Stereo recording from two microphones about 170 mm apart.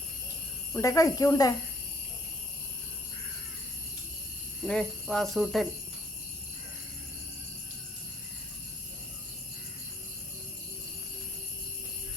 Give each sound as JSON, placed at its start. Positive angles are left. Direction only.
{"t": 0.7, "sound": "speech", "side_deg": 15}
{"t": 4.6, "sound": "speech", "side_deg": 5}